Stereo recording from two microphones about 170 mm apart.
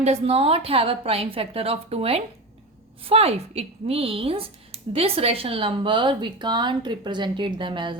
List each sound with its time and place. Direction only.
0.0 s speech: 35° right (ahead or behind)